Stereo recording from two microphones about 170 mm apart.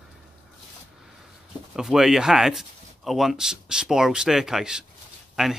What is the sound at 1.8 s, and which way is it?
Speech, 5° right (ahead or behind).